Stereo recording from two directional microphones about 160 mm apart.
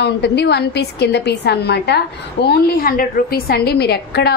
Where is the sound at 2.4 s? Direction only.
70° left (ahead or behind); by 4.3 s 90° left.